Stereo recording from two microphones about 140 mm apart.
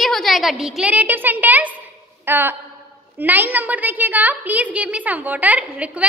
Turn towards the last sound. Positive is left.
turn(degrees=-10)  # may be behind; listen again after turning